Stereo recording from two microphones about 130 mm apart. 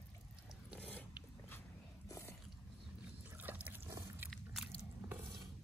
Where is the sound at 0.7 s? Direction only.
10° left (ahead or behind).